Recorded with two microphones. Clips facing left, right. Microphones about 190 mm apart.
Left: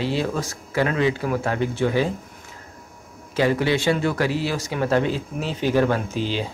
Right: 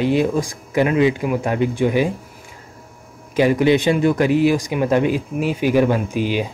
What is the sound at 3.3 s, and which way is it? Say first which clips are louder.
Speech: right 5 dB; 15° right (ahead or behind).